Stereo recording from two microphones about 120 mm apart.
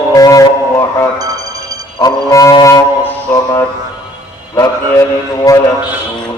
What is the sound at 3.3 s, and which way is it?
Music, 30° left (ahead or behind).